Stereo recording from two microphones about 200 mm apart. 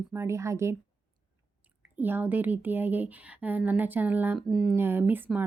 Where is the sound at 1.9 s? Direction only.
10° right (ahead or behind).